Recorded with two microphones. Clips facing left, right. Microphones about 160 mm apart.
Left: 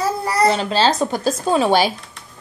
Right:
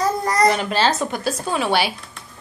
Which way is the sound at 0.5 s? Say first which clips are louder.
Left 2 dB; 25° left (ahead or behind).